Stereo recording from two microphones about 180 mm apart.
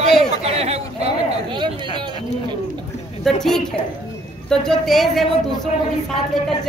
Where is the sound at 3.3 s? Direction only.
Centre (ahead or behind).